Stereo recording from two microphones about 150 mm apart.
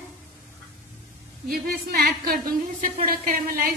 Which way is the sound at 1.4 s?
90° right.